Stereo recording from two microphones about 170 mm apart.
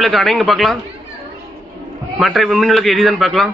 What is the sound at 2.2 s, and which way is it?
A man's voice, centre (ahead or behind).